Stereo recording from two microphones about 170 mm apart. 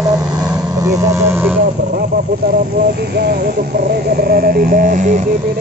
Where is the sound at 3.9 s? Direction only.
60° right (ahead or behind).